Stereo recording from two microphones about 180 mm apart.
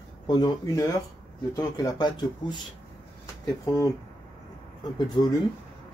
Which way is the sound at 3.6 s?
15° left (ahead or behind).